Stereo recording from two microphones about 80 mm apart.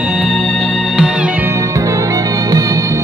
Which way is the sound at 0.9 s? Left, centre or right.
Centre.